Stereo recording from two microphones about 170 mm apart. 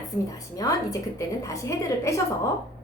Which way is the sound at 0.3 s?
20° left (ahead or behind).